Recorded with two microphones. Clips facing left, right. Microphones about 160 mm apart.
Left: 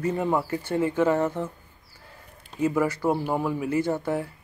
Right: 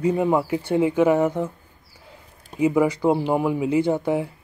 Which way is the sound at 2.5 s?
15° right (ahead or behind).